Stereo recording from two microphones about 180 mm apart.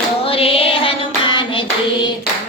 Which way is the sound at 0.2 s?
30° left (ahead or behind).